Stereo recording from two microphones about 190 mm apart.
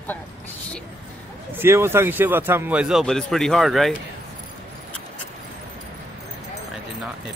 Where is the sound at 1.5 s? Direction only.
15° right (ahead or behind).